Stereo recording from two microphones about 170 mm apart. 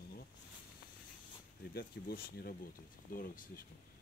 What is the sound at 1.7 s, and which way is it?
Speech, 60° left (ahead or behind).